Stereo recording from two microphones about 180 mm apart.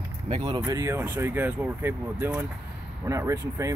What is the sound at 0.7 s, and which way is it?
Speech, 15° right (ahead or behind).